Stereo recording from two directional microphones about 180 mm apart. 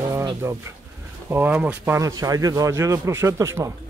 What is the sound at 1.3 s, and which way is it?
Speech, 10° right (ahead or behind).